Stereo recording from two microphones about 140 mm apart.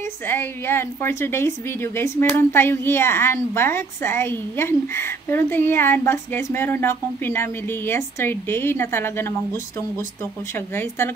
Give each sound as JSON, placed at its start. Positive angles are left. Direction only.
{"t": 0.3, "sound": "a woman's voice", "side_deg": 15}
{"t": 10.7, "sound": "a woman's voice", "side_deg": 15}